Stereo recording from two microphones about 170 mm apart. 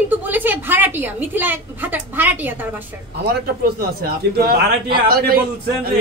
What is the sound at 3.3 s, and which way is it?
A man's voice, 60° right (ahead or behind).